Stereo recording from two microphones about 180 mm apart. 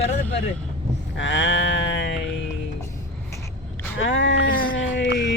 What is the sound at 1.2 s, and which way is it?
Speech, 90° left.